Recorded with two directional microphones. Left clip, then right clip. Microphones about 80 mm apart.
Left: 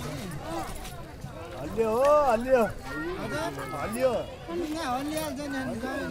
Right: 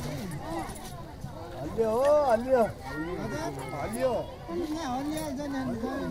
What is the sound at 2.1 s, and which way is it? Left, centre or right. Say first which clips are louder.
Speech: left 1 dB; right.